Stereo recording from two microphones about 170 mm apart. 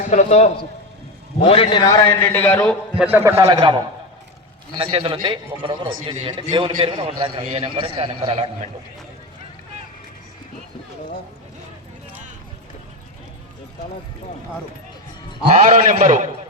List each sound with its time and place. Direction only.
0.1 s a man's voice: 45° left (ahead or behind)
1.5 s a man's voice: 30° left (ahead or behind)
2.2 s a man's voice: 10° left (ahead or behind)
3.0 s a man's voice: 15° right (ahead or behind); by 8.4 s 30° right (ahead or behind)
15.5 s a man's voice: 45° right (ahead or behind)